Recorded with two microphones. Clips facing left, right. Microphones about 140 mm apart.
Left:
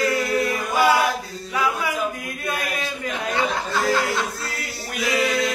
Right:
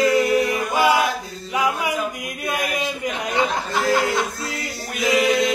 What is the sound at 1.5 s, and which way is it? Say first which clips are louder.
Chant: right 2 dB; 15° right (ahead or behind).